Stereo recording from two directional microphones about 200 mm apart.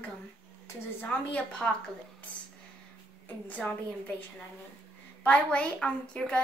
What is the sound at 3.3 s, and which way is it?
Speech, 10° left (ahead or behind).